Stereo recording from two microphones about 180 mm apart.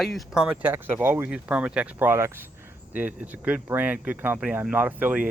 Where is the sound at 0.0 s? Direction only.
Centre (ahead or behind).